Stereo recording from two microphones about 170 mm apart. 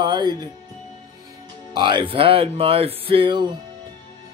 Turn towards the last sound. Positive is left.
turn(degrees=-25)  # may be behind; listen again after turning